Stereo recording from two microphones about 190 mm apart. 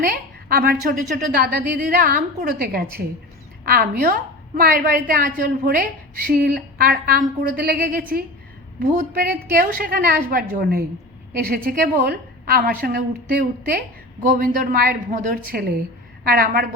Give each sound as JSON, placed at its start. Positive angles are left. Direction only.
{"t": 0.0, "sound": "a woman's voice", "side_deg": -50}